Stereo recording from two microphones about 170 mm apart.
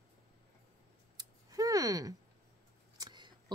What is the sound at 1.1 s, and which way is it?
Scissors, 20° right (ahead or behind).